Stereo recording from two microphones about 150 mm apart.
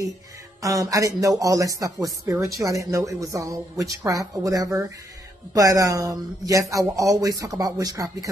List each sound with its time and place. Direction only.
0.6 s speech: 20° right (ahead or behind)